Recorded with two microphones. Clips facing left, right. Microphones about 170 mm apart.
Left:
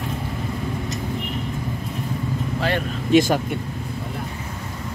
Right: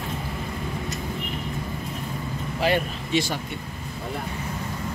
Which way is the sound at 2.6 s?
10° right (ahead or behind).